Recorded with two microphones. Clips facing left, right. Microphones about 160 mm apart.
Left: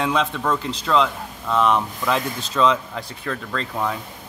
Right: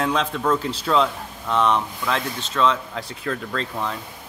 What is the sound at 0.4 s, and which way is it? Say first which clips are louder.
Speech: right 1 dB; 5° right (ahead or behind).